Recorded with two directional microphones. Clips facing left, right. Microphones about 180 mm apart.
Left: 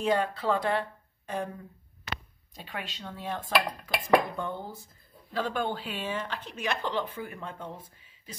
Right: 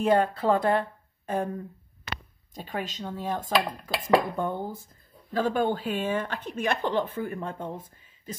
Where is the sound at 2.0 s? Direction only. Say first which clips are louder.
Right 1 dB; 40° right (ahead or behind).